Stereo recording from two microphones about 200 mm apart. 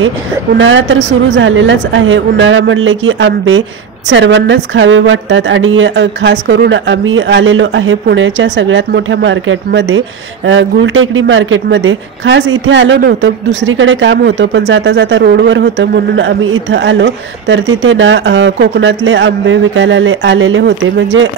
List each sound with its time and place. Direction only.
0.6 s a woman's voice: 65° right (ahead or behind)